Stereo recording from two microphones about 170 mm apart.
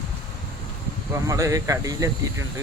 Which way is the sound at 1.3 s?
20° right (ahead or behind).